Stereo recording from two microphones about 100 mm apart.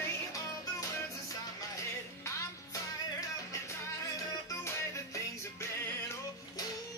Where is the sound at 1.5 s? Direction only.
35° left (ahead or behind).